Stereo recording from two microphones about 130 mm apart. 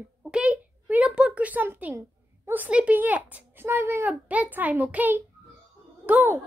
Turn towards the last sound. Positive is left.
turn(degrees=-15)  # may be behind; listen again after turning